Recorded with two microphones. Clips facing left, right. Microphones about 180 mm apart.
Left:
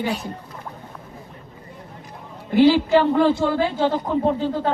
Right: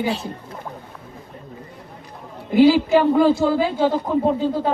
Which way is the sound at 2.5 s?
10° right (ahead or behind).